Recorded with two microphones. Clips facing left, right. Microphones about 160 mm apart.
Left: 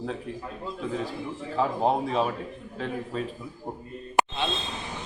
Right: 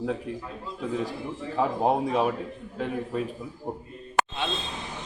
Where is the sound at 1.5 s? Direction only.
15° right (ahead or behind).